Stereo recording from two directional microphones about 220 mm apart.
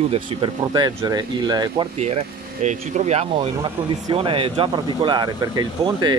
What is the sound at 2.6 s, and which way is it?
Speech, 30° right (ahead or behind).